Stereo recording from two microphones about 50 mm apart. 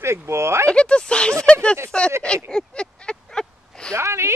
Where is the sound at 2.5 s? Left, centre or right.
Centre.